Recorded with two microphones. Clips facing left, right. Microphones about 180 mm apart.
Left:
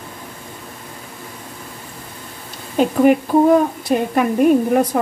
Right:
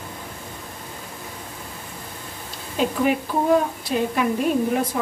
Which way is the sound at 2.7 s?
50° left (ahead or behind).